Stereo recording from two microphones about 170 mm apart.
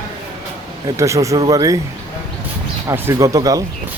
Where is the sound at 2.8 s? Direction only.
15° right (ahead or behind).